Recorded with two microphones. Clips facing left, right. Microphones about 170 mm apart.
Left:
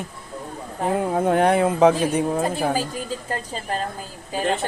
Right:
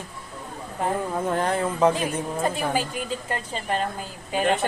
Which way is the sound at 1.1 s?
60° left (ahead or behind).